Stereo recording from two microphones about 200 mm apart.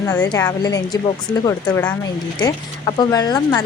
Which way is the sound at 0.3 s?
20° left (ahead or behind).